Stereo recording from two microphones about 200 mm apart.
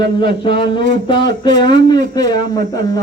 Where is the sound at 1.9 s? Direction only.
20° left (ahead or behind).